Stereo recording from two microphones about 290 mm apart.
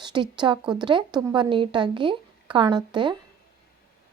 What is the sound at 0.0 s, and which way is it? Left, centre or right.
Speech, centre.